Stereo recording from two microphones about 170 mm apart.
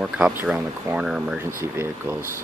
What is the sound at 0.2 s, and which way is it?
Speech, 10° right (ahead or behind).